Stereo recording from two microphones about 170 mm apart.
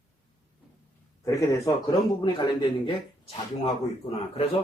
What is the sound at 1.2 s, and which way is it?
Speech, 20° left (ahead or behind).